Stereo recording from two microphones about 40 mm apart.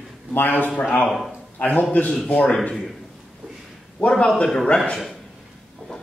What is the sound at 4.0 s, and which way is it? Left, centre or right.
Speech, left.